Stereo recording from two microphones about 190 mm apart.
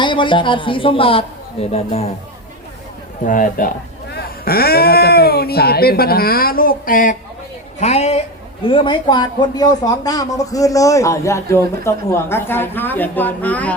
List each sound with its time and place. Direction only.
0.0 s speech: 25° left (ahead or behind)
3.2 s a man's voice: 45° left (ahead or behind)
7.8 s speech: 35° left (ahead or behind); by 13.7 s 10° left (ahead or behind)